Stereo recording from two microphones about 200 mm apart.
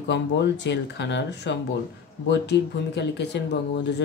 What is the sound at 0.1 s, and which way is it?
Speech, 60° left (ahead or behind).